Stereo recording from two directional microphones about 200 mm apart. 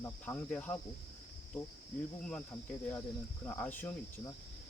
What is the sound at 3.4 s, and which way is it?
Speech, 10° left (ahead or behind).